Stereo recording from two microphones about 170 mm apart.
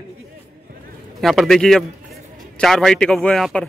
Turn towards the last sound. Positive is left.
turn(degrees=5)  # may be behind; listen again after turning